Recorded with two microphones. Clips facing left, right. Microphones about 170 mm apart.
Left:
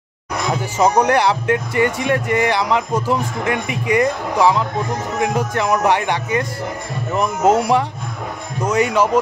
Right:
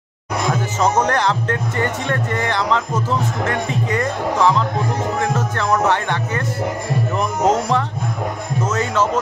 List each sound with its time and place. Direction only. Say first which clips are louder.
0.7 s speech: left 4 dB; 10° left (ahead or behind)
7.4 s speech: left 3 dB; 10° left (ahead or behind)